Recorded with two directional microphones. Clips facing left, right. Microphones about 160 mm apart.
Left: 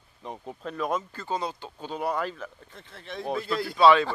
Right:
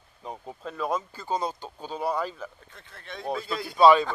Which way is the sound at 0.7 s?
10° left (ahead or behind).